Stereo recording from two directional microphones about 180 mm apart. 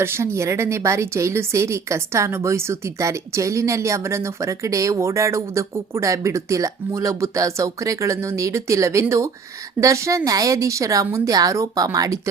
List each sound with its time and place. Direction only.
0.0 s a woman's voice: 15° right (ahead or behind)